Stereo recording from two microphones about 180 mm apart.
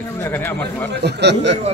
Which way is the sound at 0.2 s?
10° left (ahead or behind).